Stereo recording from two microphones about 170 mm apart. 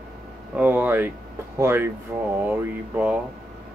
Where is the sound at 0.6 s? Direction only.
10° right (ahead or behind).